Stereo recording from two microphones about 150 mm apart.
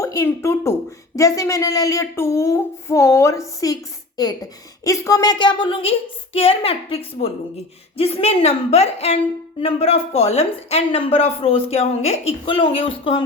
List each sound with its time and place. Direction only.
0.0 s speech: 20° left (ahead or behind)
4.8 s a woman's voice: 20° left (ahead or behind); by 13.2 s 35° left (ahead or behind)